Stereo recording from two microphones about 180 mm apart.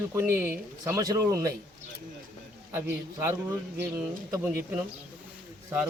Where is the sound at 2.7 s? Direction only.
15° right (ahead or behind).